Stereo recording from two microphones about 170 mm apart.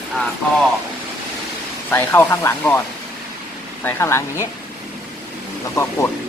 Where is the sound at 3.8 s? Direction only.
15° left (ahead or behind).